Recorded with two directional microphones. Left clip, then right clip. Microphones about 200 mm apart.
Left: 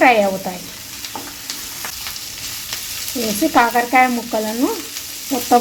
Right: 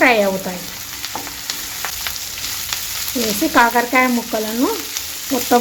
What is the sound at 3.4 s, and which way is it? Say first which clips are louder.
Frying: even; 5° right (ahead or behind).